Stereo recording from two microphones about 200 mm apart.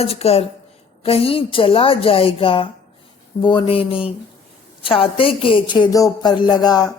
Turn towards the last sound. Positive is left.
turn(degrees=20)  # may be behind; listen again after turning